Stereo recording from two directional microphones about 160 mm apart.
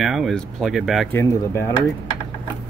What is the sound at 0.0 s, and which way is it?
Speech, centre (ahead or behind).